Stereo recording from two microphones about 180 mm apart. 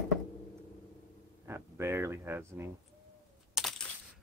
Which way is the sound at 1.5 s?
15° right (ahead or behind).